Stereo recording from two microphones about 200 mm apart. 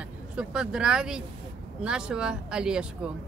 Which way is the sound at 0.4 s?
5° right (ahead or behind).